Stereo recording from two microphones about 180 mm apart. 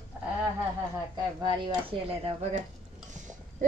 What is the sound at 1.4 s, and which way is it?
Speech, 25° right (ahead or behind).